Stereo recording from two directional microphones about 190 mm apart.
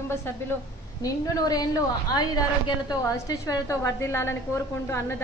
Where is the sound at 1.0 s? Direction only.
20° left (ahead or behind).